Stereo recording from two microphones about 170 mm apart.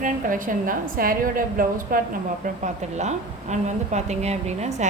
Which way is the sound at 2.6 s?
45° right (ahead or behind).